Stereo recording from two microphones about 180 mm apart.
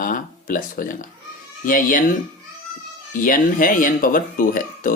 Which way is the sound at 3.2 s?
50° left (ahead or behind).